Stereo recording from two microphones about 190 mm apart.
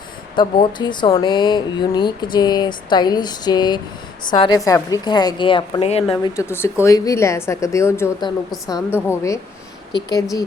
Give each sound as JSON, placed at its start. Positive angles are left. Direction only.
{"t": 0.3, "sound": "speech", "side_deg": 25}
{"t": 6.3, "sound": "a woman's voice", "side_deg": 15}